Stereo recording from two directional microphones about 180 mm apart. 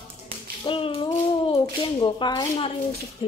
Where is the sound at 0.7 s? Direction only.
30° left (ahead or behind).